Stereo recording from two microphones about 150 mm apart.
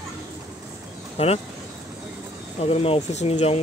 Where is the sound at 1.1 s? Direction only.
45° left (ahead or behind).